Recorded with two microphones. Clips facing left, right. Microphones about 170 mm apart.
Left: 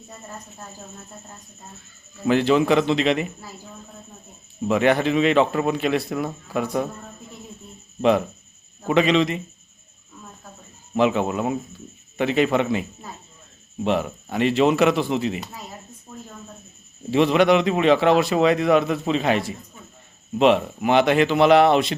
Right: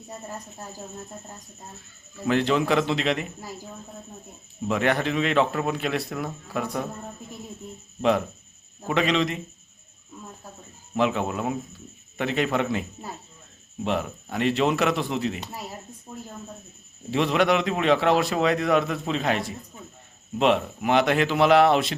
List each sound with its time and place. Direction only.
2.2 s a man's voice: 5° left (ahead or behind)
4.7 s a man's voice: centre (ahead or behind)
8.9 s a man's voice: centre (ahead or behind)
10.9 s a man's voice: centre (ahead or behind)
13.8 s a man's voice: centre (ahead or behind)
16.1 s a sound: 20° right (ahead or behind)
17.1 s a man's voice: centre (ahead or behind)